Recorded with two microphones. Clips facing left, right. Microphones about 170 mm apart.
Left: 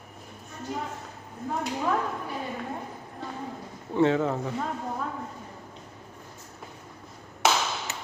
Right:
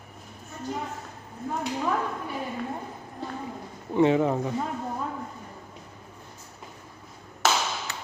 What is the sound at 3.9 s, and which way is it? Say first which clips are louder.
Speech: right 2 dB; 15° right (ahead or behind).